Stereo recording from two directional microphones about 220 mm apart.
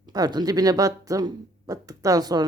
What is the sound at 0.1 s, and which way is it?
Speech, 20° right (ahead or behind).